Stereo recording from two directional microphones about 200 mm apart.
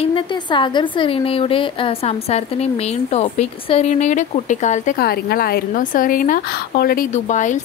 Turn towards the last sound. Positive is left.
turn(degrees=40)  # may be behind; listen again after turning